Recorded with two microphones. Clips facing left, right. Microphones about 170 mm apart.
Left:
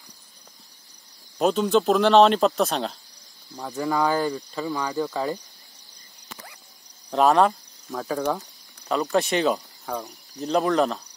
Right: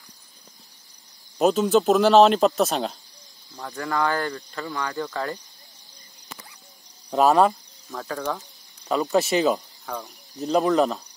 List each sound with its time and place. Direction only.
1.4 s speech: 5° right (ahead or behind)
3.5 s speech: 10° left (ahead or behind)
7.1 s speech: 5° right (ahead or behind)
9.9 s speech: 15° left (ahead or behind)
10.4 s speech: centre (ahead or behind)